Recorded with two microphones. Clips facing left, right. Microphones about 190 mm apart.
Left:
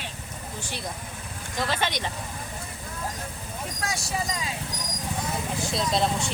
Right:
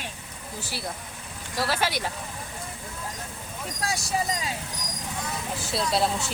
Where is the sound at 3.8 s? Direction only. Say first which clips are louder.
Right 3 dB; 35° right (ahead or behind).